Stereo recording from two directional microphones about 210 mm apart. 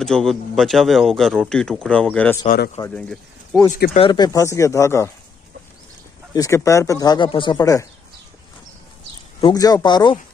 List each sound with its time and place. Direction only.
0.0 s a man's voice: centre (ahead or behind)
2.4 s speech: 45° left (ahead or behind)
2.8 s speech: 5° left (ahead or behind)
3.7 s speech: 40° left (ahead or behind)
4.0 s speech: 20° left (ahead or behind)
6.3 s speech: 15° left (ahead or behind)
9.4 s speech: 20° left (ahead or behind)